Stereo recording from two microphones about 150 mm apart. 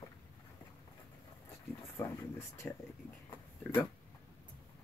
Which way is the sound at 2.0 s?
15° left (ahead or behind).